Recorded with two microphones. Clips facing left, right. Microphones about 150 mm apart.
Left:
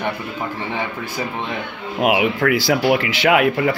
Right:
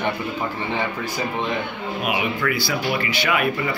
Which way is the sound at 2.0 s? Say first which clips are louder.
Left 7 dB; 90° left.